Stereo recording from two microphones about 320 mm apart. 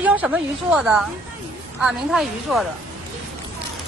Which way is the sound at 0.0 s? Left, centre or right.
Centre.